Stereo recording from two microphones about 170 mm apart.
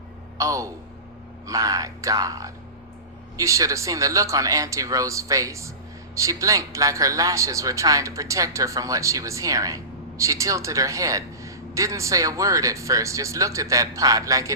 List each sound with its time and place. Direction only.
0.3 s a man's voice: 20° right (ahead or behind)